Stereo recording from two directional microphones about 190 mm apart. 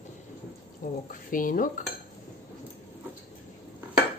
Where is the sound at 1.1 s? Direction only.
45° left (ahead or behind).